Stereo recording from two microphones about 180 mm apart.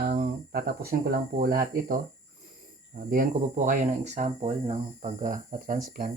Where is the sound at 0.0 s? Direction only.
55° right (ahead or behind).